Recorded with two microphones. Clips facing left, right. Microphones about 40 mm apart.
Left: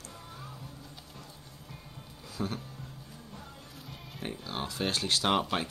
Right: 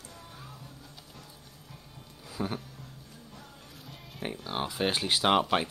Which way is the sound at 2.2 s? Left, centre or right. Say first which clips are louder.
Right 1 dB; centre.